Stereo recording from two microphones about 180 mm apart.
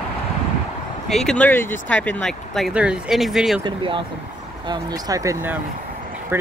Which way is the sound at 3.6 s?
30° right (ahead or behind).